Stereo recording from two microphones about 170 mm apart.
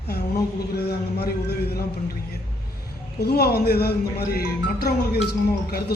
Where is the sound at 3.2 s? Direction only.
70° left (ahead or behind).